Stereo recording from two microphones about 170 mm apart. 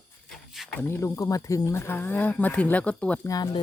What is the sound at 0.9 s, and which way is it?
Speech, 15° left (ahead or behind).